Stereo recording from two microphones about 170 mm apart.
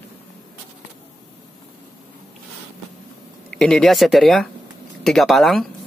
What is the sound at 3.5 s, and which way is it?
Speech, 5° left (ahead or behind).